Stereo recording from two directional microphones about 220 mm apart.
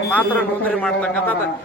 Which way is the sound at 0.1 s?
5° left (ahead or behind).